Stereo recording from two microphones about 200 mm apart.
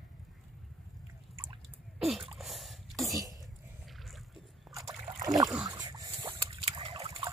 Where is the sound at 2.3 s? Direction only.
Centre (ahead or behind).